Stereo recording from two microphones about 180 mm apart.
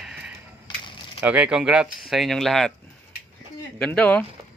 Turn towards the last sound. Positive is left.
turn(degrees=5)  # may be behind; listen again after turning